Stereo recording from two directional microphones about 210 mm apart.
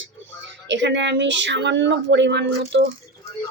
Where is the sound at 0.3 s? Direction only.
60° right (ahead or behind).